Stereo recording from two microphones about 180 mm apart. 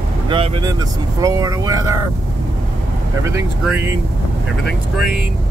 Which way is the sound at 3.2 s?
10° right (ahead or behind).